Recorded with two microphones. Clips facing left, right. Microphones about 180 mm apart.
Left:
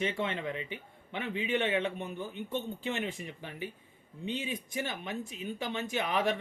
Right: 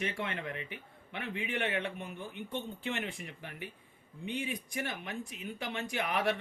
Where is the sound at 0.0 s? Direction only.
25° left (ahead or behind).